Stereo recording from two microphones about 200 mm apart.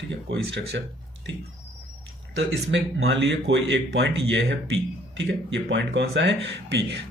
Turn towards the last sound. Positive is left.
turn(degrees=-65)  # may be behind; listen again after turning